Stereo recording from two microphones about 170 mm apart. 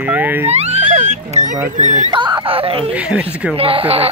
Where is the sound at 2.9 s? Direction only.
5° right (ahead or behind).